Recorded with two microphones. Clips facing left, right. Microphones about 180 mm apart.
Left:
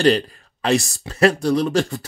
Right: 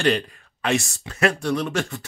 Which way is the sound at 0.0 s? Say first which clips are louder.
Left 5 dB; 35° left (ahead or behind).